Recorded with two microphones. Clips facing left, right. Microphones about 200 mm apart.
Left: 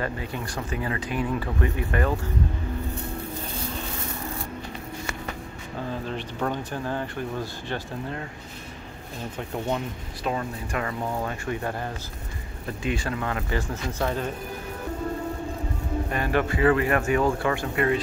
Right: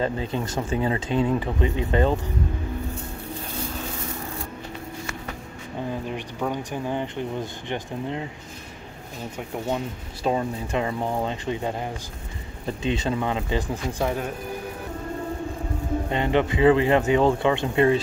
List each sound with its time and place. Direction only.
0.0 s speech: 25° right (ahead or behind)
5.9 s speech: 15° right (ahead or behind)
10.2 s speech: 25° right (ahead or behind)
16.1 s speech: 20° right (ahead or behind)